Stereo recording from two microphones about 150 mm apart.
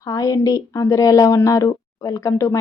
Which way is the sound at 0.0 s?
20° left (ahead or behind).